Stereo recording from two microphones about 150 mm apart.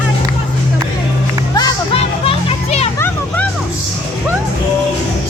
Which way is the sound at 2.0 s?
40° left (ahead or behind).